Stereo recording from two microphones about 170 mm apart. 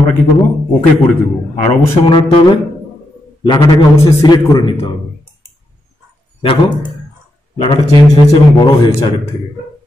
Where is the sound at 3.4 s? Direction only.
25° left (ahead or behind).